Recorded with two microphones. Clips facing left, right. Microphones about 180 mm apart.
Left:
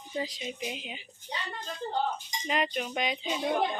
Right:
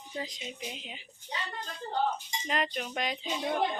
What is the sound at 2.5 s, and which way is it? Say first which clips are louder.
Chink: left 2 dB; 5° left (ahead or behind).